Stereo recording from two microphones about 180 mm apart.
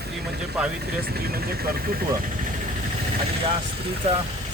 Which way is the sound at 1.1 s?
60° right (ahead or behind).